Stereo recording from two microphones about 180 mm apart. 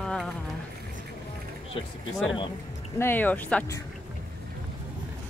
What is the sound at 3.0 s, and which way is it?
Speech, 10° left (ahead or behind).